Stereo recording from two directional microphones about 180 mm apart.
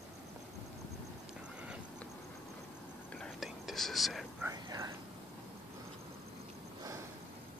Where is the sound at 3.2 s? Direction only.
Centre (ahead or behind).